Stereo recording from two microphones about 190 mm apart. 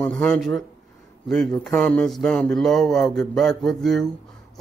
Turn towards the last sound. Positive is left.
turn(degrees=0)  # may be behind; listen again after turning